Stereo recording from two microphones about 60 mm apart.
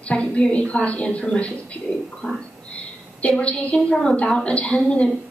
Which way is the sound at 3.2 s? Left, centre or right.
Left.